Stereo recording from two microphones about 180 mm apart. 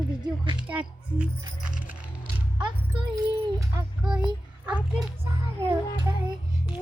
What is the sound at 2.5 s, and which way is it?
Speech, 25° right (ahead or behind).